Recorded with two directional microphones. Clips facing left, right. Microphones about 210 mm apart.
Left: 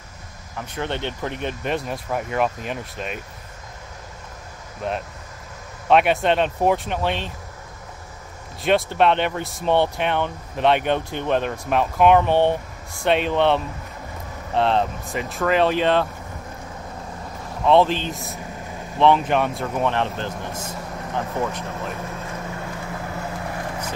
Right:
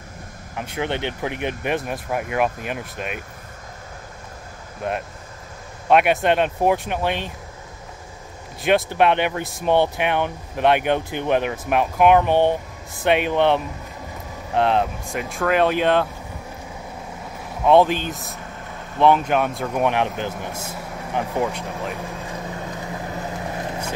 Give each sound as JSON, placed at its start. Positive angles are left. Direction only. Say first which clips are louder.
{"t": 0.6, "sound": "speech", "louder": "right 2 dB", "side_deg": -15}
{"t": 5.9, "sound": "speech", "louder": "right 1 dB", "side_deg": -5}
{"t": 8.6, "sound": "speech", "louder": "right 1 dB", "side_deg": 0}
{"t": 17.6, "sound": "speech", "louder": "right 1 dB", "side_deg": -10}
{"t": 19.8, "sound": "vehicle", "louder": "right 2 dB", "side_deg": -10}